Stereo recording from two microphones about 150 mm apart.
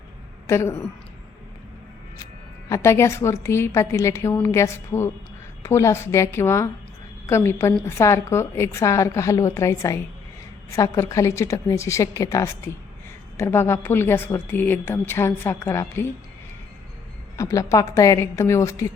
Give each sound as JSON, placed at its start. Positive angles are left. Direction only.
{"t": 0.4, "sound": "a woman's voice", "side_deg": 20}
{"t": 2.6, "sound": "a woman's voice", "side_deg": 20}
{"t": 17.3, "sound": "a woman's voice", "side_deg": 20}